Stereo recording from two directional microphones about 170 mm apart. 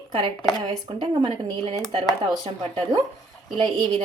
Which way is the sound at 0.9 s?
30° right (ahead or behind).